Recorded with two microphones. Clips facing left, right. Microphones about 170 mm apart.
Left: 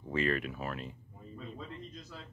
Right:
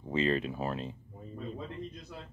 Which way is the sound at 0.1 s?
20° right (ahead or behind).